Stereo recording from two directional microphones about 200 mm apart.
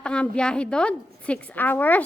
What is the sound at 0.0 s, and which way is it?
A woman's voice, 5° left (ahead or behind).